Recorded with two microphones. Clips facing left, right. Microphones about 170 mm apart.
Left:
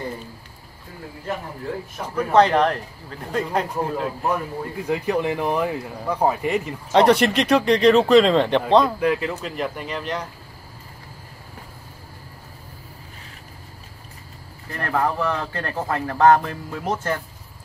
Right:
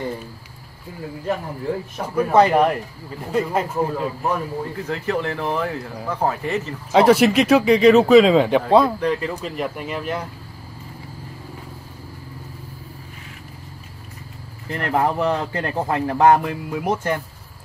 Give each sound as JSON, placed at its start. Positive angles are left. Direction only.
{"t": 2.1, "sound": "speech", "side_deg": -10}
{"t": 4.8, "sound": "speech", "side_deg": 15}
{"t": 6.9, "sound": "speech", "side_deg": -5}
{"t": 9.0, "sound": "speech", "side_deg": 5}
{"t": 14.7, "sound": "speech", "side_deg": -20}